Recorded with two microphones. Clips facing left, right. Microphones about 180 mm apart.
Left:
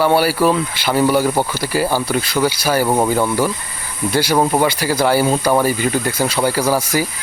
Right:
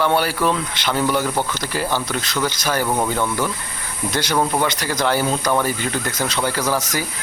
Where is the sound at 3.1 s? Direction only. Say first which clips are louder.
Left 5 dB; 10° left (ahead or behind).